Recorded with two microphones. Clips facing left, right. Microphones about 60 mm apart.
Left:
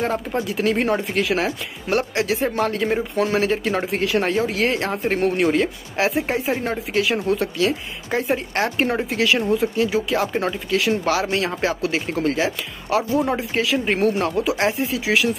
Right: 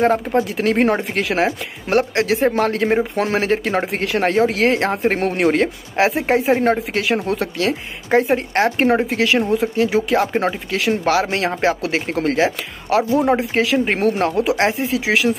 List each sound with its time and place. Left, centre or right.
0.0 s speech: right